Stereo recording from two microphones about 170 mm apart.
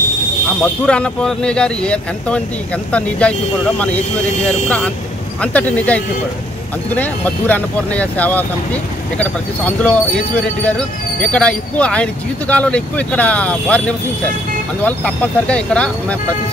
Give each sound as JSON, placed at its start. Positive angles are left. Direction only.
{"t": 0.6, "sound": "speech", "side_deg": 5}